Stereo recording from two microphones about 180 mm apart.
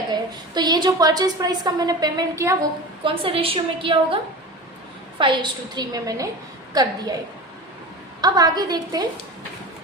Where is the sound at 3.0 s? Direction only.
30° right (ahead or behind).